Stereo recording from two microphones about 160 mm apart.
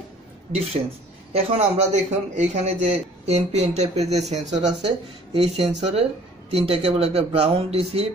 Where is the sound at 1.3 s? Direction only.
40° right (ahead or behind).